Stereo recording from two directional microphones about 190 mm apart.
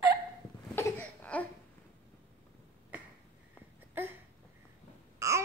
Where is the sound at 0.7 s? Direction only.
10° left (ahead or behind).